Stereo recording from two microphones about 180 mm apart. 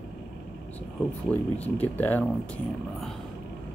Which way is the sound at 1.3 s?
10° left (ahead or behind).